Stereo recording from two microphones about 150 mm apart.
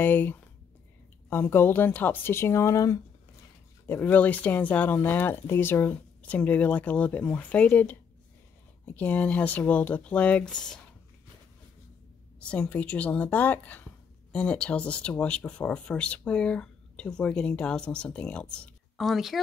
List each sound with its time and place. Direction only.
0.0 s speech: 15° left (ahead or behind)
12.4 s speech: 5° left (ahead or behind)